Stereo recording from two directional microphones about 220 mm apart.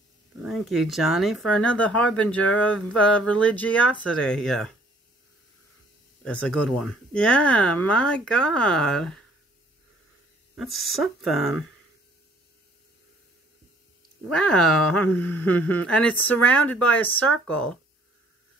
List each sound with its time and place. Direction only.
0.4 s speech: centre (ahead or behind)
6.2 s speech: 5° left (ahead or behind)
10.5 s speech: centre (ahead or behind)
14.3 s speech: 5° left (ahead or behind)
14.9 s a sound: 90° left
15.1 s speech: 10° left (ahead or behind)